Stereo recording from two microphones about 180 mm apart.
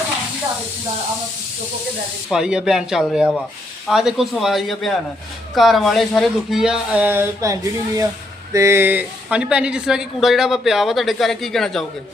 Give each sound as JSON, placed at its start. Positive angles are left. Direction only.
{"t": 2.3, "sound": "speech", "side_deg": -5}